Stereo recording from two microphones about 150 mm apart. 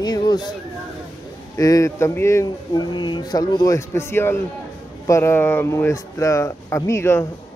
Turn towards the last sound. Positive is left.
turn(degrees=15)  # may be behind; listen again after turning